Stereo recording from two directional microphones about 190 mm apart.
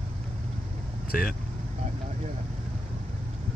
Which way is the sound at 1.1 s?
55° left (ahead or behind).